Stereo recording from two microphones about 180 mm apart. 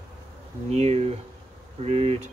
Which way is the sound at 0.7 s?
35° right (ahead or behind).